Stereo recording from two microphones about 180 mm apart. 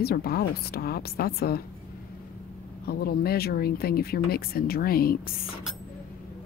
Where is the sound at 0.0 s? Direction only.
60° left (ahead or behind).